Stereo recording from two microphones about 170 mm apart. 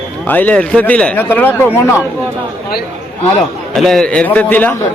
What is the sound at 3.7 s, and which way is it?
Speech, centre (ahead or behind).